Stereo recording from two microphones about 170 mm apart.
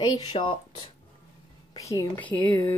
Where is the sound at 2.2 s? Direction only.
10° left (ahead or behind).